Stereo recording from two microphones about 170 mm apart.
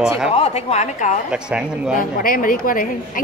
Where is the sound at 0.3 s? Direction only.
35° left (ahead or behind).